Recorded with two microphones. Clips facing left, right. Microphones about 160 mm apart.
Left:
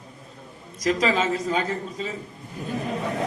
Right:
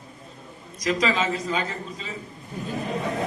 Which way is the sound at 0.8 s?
45° left (ahead or behind).